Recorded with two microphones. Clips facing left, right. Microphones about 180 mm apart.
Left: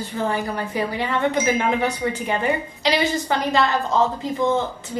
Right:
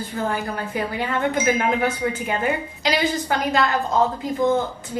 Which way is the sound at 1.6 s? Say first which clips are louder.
Even; 5° right (ahead or behind).